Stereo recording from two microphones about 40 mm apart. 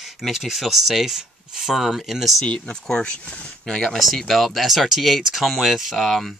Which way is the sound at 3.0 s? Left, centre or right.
Left.